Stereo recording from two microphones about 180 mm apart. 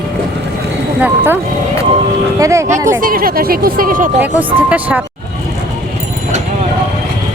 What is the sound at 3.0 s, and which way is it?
Speech, 55° right (ahead or behind).